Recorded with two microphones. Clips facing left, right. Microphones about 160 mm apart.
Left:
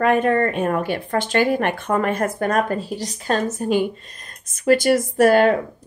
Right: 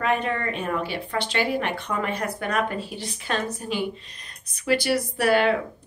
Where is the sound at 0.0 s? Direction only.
50° left (ahead or behind).